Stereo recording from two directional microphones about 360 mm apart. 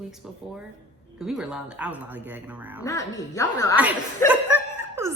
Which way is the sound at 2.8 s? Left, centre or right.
Centre.